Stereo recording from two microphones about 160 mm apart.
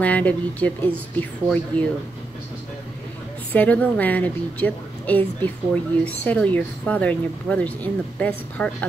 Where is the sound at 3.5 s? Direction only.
10° left (ahead or behind).